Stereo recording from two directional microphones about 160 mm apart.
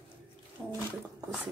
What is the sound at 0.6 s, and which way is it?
Bathtub, 5° right (ahead or behind).